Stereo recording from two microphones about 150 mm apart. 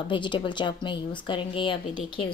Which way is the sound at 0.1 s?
30° left (ahead or behind).